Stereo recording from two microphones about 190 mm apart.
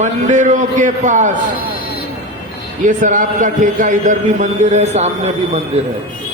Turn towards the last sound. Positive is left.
turn(degrees=-35)  # may be behind; listen again after turning